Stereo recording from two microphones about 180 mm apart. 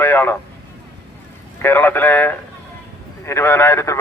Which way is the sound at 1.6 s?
10° left (ahead or behind).